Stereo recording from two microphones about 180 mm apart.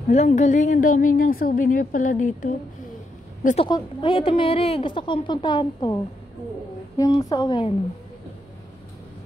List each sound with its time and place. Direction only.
0.1 s a woman's voice: 40° left (ahead or behind)
3.6 s a woman's voice: 25° left (ahead or behind)
7.0 s a woman's voice: 20° left (ahead or behind)